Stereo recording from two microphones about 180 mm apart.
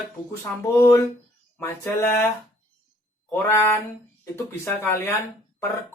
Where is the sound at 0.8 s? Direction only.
15° left (ahead or behind).